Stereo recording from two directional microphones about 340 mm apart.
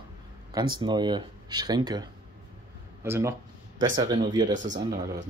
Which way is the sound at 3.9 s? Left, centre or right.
Centre.